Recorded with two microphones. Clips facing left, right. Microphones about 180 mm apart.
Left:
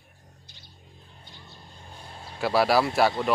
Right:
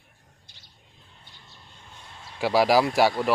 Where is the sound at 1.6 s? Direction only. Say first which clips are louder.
Left 3 dB; 35° left (ahead or behind).